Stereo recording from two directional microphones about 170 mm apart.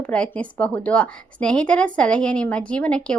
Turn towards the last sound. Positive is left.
turn(degrees=5)  # may be behind; listen again after turning